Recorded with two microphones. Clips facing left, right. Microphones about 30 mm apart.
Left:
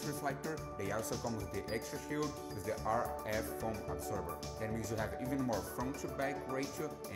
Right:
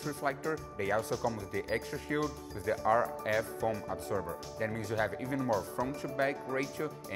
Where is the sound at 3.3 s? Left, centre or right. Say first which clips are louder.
Right 6 dB; centre.